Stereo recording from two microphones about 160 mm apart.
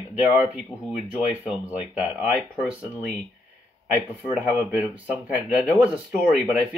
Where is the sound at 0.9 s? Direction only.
10° right (ahead or behind).